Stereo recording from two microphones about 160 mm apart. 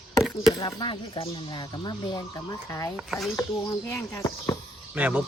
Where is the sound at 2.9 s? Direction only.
Centre (ahead or behind).